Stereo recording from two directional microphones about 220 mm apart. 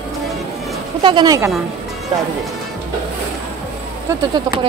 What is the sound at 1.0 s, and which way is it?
Speech, 20° right (ahead or behind).